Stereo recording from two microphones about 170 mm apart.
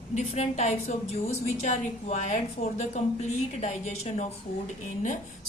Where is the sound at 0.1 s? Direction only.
40° left (ahead or behind).